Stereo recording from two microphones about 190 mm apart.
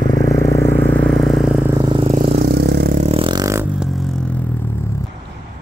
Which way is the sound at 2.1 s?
45° right (ahead or behind).